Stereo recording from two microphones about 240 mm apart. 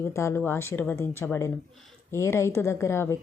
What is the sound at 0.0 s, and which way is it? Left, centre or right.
A woman's voice, centre.